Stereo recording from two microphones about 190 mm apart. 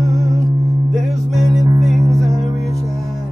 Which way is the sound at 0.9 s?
Centre (ahead or behind).